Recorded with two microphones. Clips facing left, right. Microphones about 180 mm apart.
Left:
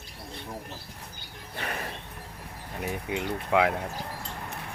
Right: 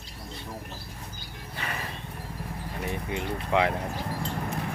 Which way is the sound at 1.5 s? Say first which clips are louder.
Left 1 dB; 50° left (ahead or behind).